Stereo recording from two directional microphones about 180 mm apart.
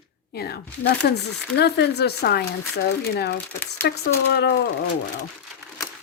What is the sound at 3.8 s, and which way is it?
Speech, 60° left (ahead or behind).